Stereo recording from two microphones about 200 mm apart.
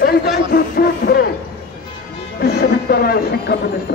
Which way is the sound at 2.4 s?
50° left (ahead or behind).